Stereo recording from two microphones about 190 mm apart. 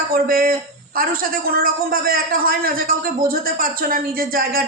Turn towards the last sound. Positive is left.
turn(degrees=-50)  # may be behind; listen again after turning